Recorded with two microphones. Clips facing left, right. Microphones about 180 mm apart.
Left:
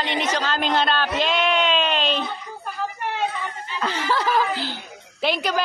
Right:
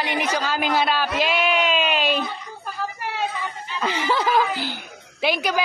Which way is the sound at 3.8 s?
15° right (ahead or behind).